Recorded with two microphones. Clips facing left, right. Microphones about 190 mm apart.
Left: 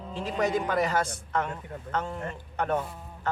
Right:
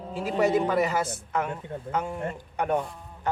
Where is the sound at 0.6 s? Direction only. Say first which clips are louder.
Right 2 dB; 5° right (ahead or behind).